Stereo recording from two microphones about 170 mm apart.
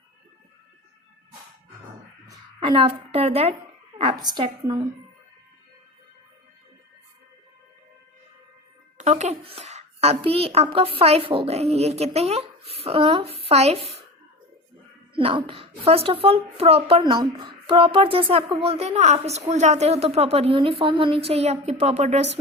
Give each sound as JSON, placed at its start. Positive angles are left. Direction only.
{"t": 2.6, "sound": "speech", "side_deg": -30}
{"t": 4.1, "sound": "a woman's voice", "side_deg": -25}
{"t": 9.0, "sound": "speech", "side_deg": -40}
{"t": 15.1, "sound": "speech", "side_deg": -30}
{"t": 17.0, "sound": "speech", "side_deg": -25}